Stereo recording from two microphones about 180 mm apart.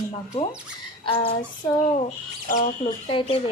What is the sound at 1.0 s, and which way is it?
Speech, 30° left (ahead or behind).